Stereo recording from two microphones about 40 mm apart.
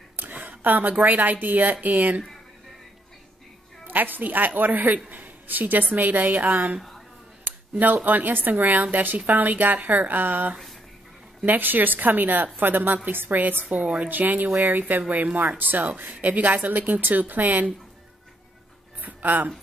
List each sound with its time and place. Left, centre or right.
0.1 s speech: right
3.8 s a man's voice: right
7.8 s speech: right
13.7 s a woman's voice: right
14.0 s speech: right
18.9 s music: right